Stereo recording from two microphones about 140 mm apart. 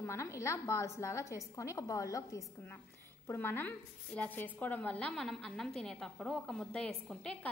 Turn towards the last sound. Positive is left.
turn(degrees=5)  # may be behind; listen again after turning